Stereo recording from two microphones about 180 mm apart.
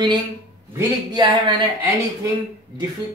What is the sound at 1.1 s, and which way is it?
Speech, 25° right (ahead or behind).